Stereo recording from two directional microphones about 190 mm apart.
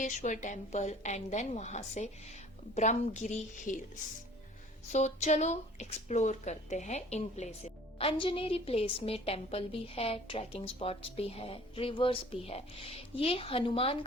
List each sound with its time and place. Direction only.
0.0 s speech: 40° left (ahead or behind)
4.9 s speech: 40° left (ahead or behind)